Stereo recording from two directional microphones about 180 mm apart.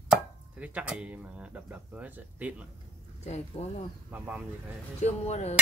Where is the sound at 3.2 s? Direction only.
35° left (ahead or behind).